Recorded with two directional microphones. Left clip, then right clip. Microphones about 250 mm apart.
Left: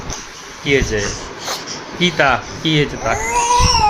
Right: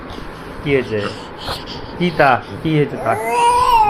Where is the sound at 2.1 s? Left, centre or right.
Centre.